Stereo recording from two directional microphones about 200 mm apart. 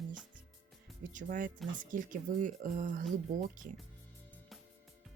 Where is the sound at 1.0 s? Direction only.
40° right (ahead or behind).